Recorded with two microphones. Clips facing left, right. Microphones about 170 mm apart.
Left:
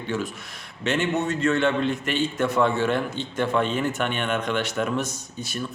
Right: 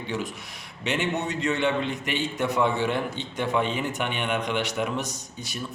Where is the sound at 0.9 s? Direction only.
15° right (ahead or behind).